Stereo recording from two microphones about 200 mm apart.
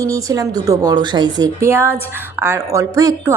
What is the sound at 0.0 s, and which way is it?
A woman's voice, 15° right (ahead or behind).